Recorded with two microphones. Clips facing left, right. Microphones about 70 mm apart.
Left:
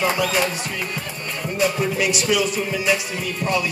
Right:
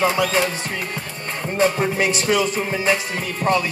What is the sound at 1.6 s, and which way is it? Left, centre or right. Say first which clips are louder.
Music: right 2 dB; right.